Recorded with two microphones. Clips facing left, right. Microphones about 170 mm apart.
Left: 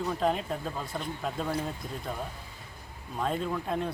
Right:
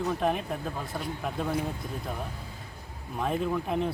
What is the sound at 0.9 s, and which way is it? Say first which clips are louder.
Speech: right 1 dB; centre (ahead or behind).